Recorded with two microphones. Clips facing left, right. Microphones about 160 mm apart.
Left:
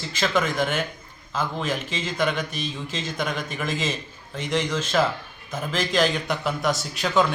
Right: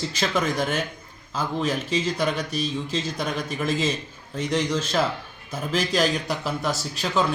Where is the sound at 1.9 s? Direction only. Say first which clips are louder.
Right 2 dB; 35° right (ahead or behind).